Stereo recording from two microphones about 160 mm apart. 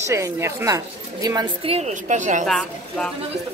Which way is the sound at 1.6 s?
45° right (ahead or behind).